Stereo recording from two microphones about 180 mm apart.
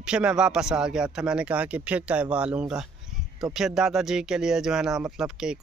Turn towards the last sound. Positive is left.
turn(degrees=-5)  # may be behind; listen again after turning